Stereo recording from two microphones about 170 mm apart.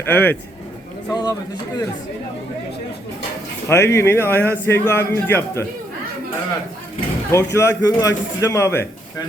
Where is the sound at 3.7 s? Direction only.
15° left (ahead or behind).